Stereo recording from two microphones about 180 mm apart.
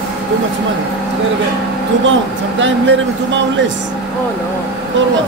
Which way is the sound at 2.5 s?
90° right.